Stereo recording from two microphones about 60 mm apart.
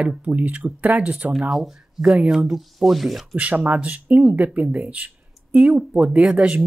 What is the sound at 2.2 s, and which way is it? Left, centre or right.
Speech, centre.